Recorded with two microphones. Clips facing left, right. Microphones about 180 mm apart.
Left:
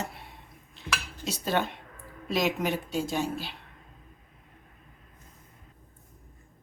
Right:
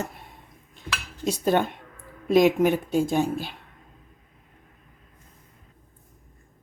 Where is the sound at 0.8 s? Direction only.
50° right (ahead or behind).